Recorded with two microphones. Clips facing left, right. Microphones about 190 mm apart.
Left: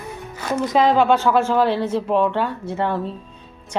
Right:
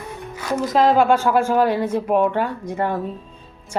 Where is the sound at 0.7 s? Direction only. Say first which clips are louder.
Right 1 dB; centre (ahead or behind).